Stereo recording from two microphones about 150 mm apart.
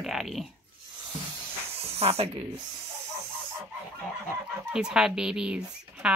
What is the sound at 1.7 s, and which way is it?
Snake, 40° right (ahead or behind).